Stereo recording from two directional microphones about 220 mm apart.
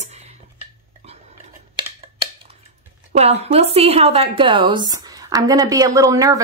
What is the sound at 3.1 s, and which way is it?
A woman's voice, 30° right (ahead or behind).